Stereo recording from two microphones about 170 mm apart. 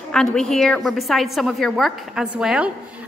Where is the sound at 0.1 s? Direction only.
5° left (ahead or behind).